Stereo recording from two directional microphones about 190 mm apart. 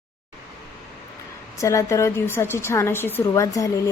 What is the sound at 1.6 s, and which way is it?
A woman's voice, 15° left (ahead or behind).